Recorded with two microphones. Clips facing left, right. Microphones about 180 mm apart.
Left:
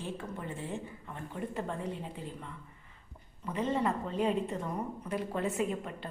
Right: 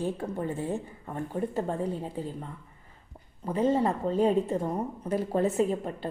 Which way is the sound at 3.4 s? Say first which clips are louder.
Right 6 dB; 35° right (ahead or behind).